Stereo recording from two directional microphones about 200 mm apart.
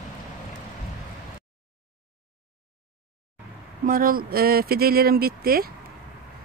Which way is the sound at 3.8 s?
45° right (ahead or behind).